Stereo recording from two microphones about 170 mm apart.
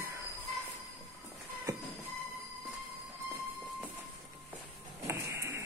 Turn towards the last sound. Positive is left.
turn(degrees=-15)  # may be behind; listen again after turning